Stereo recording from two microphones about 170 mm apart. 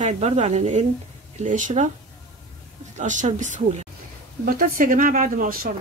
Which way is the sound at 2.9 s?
45° right (ahead or behind).